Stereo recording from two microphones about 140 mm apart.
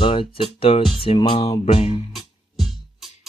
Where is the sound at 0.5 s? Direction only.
40° left (ahead or behind).